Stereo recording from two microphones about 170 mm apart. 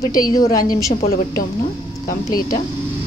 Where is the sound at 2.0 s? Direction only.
55° left (ahead or behind).